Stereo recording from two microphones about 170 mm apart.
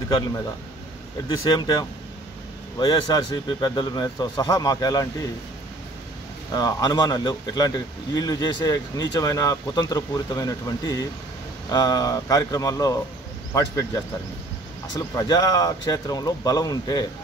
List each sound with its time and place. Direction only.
1.3 s speech: 25° left (ahead or behind)
6.5 s speech: 20° left (ahead or behind)